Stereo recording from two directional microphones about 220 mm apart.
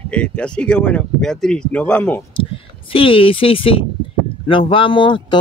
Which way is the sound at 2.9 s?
25° left (ahead or behind).